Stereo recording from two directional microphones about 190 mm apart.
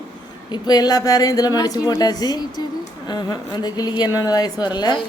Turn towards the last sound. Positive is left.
turn(degrees=25)  # may be behind; listen again after turning